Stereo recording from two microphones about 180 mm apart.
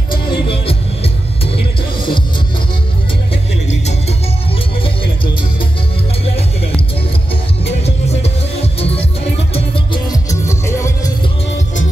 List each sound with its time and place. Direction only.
0.1 s music: 30° left (ahead or behind)
4.8 s music: 30° left (ahead or behind)
7.8 s music: 35° left (ahead or behind)
10.0 s music: 20° left (ahead or behind)